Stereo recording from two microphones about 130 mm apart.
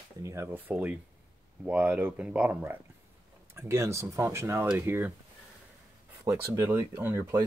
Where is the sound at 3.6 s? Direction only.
20° right (ahead or behind).